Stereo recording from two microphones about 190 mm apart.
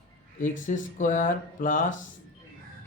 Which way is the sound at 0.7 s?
40° left (ahead or behind).